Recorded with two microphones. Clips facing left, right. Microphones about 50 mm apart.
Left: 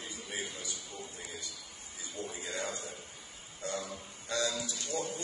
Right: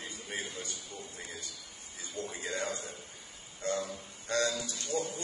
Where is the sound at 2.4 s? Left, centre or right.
Right.